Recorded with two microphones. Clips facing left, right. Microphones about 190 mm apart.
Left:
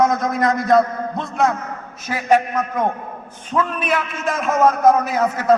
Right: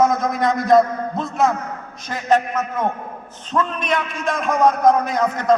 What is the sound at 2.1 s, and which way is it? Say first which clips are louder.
A man's voice: left 1 dB; 10° left (ahead or behind).